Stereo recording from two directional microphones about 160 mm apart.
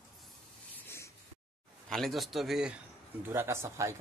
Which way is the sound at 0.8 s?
15° left (ahead or behind).